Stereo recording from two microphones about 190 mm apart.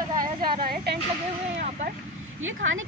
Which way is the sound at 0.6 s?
55° right (ahead or behind).